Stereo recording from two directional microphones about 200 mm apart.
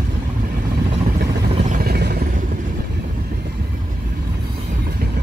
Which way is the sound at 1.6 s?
45° right (ahead or behind).